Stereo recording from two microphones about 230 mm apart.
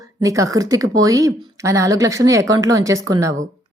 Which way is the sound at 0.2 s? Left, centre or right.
Centre.